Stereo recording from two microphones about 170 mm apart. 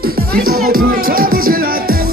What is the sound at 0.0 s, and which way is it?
Music, 60° right (ahead or behind).